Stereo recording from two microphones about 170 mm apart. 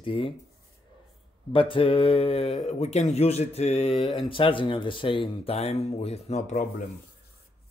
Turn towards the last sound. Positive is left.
turn(degrees=40)  # may be behind; listen again after turning